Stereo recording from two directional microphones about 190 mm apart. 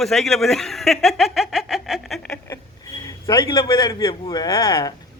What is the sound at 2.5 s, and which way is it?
A man's voice, 15° left (ahead or behind).